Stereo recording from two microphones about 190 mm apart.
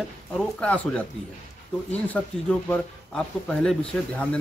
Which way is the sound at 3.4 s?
5° left (ahead or behind).